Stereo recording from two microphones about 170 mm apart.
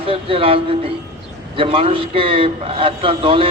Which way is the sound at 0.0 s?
35° right (ahead or behind).